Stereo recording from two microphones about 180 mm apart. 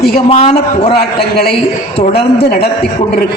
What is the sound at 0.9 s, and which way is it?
A man's voice, 60° left (ahead or behind).